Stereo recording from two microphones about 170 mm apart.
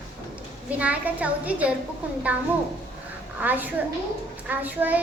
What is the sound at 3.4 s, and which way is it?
A woman's voice, 10° right (ahead or behind).